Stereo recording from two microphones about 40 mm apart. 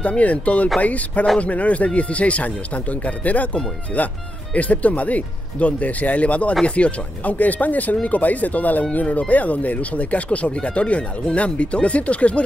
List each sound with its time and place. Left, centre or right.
0.2 s speech: left